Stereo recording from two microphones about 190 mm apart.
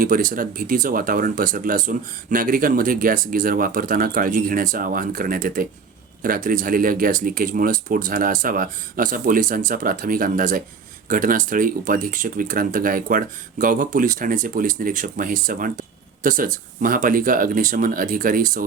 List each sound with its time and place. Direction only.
0.0 s speech: 45° right (ahead or behind)